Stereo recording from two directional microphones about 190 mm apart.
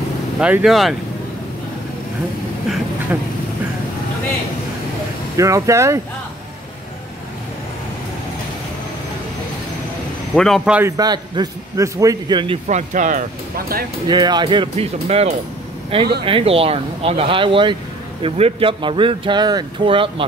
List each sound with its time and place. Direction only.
0.4 s speech: 5° right (ahead or behind)
5.4 s a man's voice: 15° right (ahead or behind)
10.3 s a man's voice: centre (ahead or behind); by 12.5 s 25° right (ahead or behind)
12.6 s speech: 40° right (ahead or behind)
14.0 s speech: 25° right (ahead or behind)